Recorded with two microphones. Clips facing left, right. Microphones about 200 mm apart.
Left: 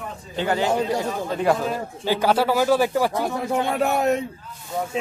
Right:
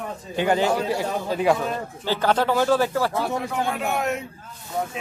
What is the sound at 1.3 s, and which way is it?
Speech, centre (ahead or behind).